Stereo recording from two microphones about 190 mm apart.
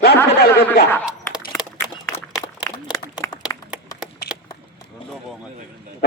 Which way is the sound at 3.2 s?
15° left (ahead or behind).